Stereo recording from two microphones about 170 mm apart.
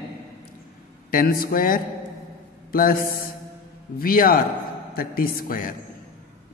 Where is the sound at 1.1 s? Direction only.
60° left (ahead or behind).